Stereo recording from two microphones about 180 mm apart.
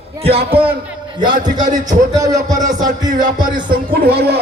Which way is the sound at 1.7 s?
20° right (ahead or behind).